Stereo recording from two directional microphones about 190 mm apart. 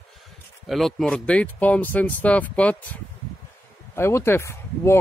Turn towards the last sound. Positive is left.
turn(degrees=15)  # may be behind; listen again after turning